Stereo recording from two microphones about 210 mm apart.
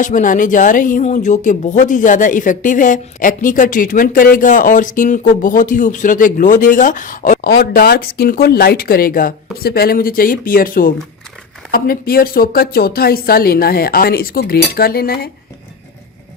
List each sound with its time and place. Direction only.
0.0 s speech: 40° left (ahead or behind)